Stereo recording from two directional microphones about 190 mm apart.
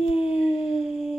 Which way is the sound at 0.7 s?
Centre (ahead or behind).